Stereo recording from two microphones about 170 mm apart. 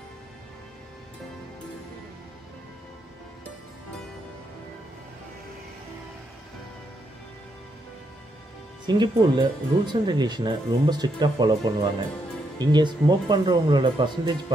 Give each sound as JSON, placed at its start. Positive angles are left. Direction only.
{"t": 8.8, "sound": "speech", "side_deg": -25}